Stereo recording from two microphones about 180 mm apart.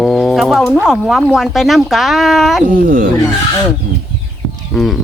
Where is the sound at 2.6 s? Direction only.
50° right (ahead or behind).